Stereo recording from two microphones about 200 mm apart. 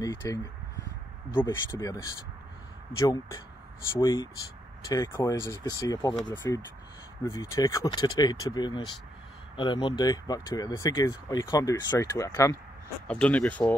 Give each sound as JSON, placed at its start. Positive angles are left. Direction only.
{"t": 0.0, "sound": "speech", "side_deg": 15}
{"t": 1.5, "sound": "speech", "side_deg": 15}
{"t": 3.0, "sound": "speech", "side_deg": 15}
{"t": 13.0, "sound": "speech", "side_deg": 5}